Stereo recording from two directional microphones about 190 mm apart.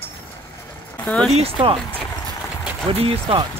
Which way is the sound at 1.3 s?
30° right (ahead or behind).